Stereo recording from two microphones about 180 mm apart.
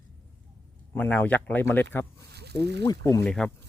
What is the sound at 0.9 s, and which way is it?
Speech, 10° left (ahead or behind).